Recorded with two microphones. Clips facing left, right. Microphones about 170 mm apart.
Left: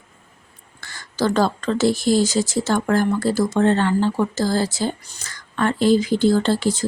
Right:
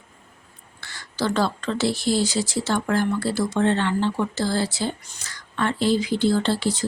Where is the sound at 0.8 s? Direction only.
45° left (ahead or behind).